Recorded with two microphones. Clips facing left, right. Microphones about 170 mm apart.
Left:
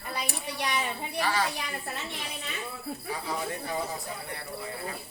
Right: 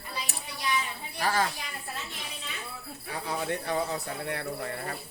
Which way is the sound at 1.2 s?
45° right (ahead or behind).